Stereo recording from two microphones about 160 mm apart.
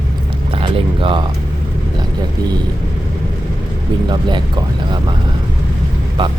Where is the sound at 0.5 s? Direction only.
30° right (ahead or behind).